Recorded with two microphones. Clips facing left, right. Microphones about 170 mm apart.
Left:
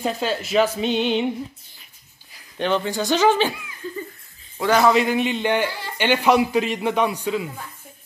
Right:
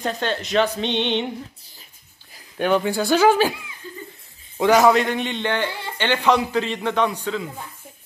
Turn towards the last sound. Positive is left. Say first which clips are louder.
# left 1 dB
turn(degrees=10)  # may be behind; listen again after turning